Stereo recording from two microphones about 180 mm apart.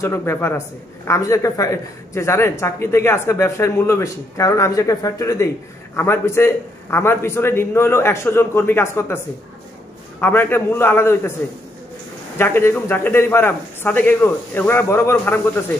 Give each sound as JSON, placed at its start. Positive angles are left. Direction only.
{"t": 0.0, "sound": "speech", "side_deg": 15}
{"t": 10.2, "sound": "speech", "side_deg": 10}
{"t": 12.4, "sound": "speech", "side_deg": 15}